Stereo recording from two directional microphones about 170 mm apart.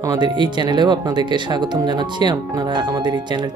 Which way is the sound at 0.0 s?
25° right (ahead or behind).